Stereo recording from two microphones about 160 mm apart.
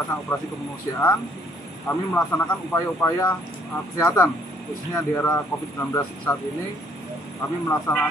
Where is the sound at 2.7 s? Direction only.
15° left (ahead or behind).